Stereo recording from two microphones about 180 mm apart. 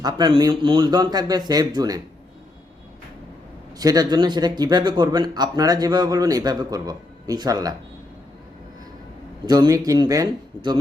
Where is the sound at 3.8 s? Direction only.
20° right (ahead or behind).